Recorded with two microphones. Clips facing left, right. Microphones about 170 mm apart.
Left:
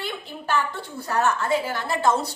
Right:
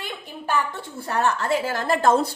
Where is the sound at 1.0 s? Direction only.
25° right (ahead or behind).